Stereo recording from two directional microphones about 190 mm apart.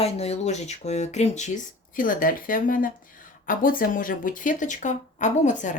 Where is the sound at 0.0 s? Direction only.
35° left (ahead or behind).